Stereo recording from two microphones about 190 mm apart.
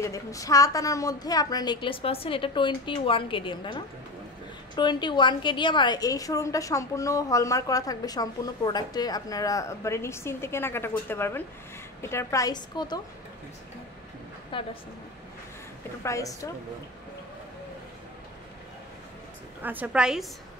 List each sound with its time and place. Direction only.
0.0 s a woman's voice: 15° left (ahead or behind)
14.5 s a woman's voice: 25° left (ahead or behind)
16.0 s a woman's voice: 15° left (ahead or behind)
19.6 s a woman's voice: 10° right (ahead or behind)